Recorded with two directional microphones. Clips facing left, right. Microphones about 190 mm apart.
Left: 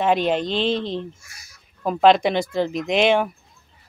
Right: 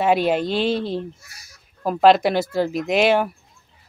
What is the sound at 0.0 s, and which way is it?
Speech, 10° right (ahead or behind).